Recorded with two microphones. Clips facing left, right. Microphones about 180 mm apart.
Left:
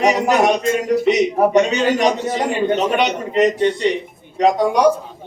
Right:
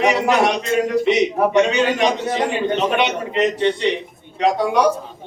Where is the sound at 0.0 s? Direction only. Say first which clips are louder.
Left 1 dB; 40° left (ahead or behind).